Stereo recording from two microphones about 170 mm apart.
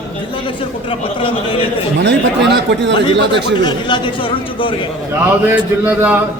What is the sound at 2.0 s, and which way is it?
Speech, 90° right.